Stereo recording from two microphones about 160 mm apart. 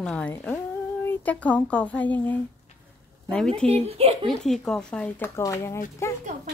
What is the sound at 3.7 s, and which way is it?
Speech, 40° right (ahead or behind).